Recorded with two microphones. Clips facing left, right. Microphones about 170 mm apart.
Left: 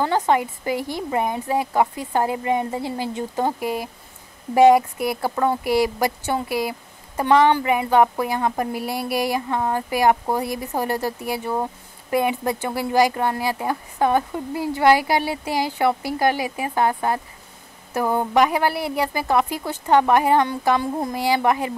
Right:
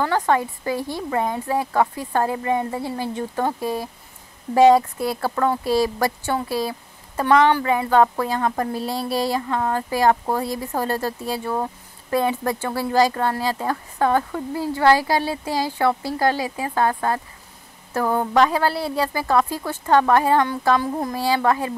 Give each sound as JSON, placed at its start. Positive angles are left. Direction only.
{"t": 0.0, "sound": "a woman's voice", "side_deg": 20}